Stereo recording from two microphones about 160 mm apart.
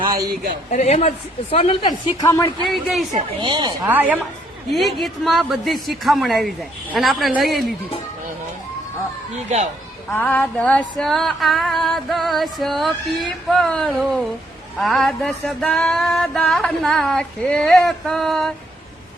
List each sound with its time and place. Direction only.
0.0 s speech: 20° right (ahead or behind)
0.7 s speech: 45° left (ahead or behind); by 2.5 s 20° left (ahead or behind)
2.6 s female singing: centre (ahead or behind)
3.4 s speech: 30° right (ahead or behind)
3.8 s a woman's voice: 10° right (ahead or behind)
4.7 s female singing: centre (ahead or behind)
10.1 s female singing: 10° left (ahead or behind)